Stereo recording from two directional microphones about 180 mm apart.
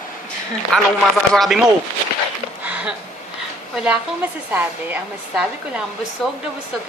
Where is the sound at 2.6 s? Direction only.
5° right (ahead or behind).